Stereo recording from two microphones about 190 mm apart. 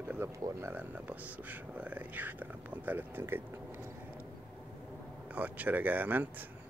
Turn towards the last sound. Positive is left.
turn(degrees=-10)  # may be behind; listen again after turning